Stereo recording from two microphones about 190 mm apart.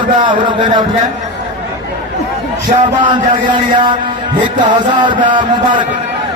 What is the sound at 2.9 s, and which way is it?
Music, 25° right (ahead or behind).